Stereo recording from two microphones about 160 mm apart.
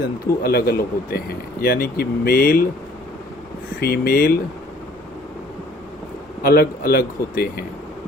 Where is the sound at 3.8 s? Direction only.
70° left (ahead or behind).